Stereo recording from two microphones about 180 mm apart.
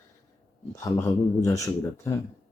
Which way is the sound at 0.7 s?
15° left (ahead or behind).